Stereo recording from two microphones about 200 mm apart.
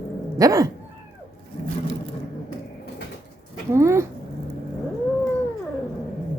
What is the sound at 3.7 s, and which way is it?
Speech, 15° right (ahead or behind).